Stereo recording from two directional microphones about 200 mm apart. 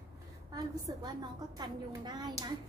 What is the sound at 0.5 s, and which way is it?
A woman's voice, 20° right (ahead or behind).